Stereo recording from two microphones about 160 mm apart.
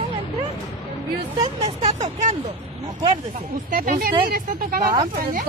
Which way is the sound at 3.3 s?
65° right (ahead or behind).